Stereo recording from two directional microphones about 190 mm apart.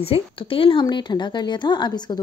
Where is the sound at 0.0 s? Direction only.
30° left (ahead or behind).